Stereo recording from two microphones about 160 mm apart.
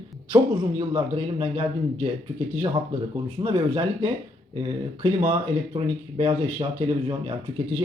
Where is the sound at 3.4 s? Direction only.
30° right (ahead or behind).